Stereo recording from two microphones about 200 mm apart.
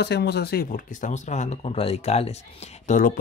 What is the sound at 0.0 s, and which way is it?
Speech, 55° left (ahead or behind).